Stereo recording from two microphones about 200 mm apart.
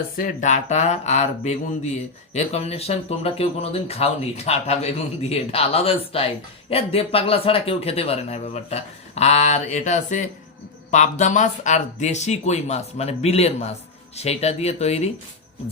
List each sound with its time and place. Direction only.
0.2 s speech: 40° left (ahead or behind)